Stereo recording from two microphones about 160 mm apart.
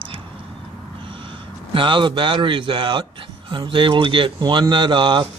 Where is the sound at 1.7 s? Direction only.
30° right (ahead or behind).